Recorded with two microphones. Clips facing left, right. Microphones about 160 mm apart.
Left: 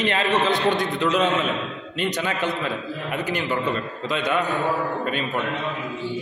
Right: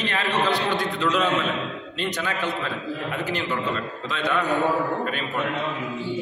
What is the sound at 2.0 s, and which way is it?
Speech, 20° left (ahead or behind).